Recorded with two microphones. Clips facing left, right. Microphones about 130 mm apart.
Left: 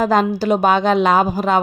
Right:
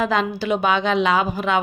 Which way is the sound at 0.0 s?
40° left (ahead or behind).